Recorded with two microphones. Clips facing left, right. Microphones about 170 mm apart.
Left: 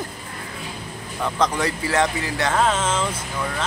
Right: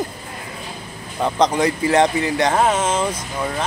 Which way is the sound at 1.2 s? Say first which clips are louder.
Right 5 dB; 20° right (ahead or behind).